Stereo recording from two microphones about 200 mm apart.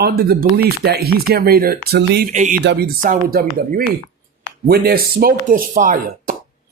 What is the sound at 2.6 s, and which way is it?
Speech, 60° right (ahead or behind).